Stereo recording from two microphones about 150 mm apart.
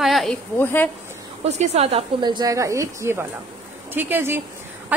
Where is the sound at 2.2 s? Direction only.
30° right (ahead or behind).